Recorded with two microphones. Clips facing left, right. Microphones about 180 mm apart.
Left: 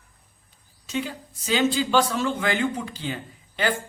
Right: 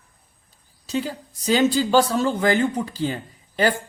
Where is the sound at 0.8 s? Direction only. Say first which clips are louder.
Right 3 dB; 35° right (ahead or behind).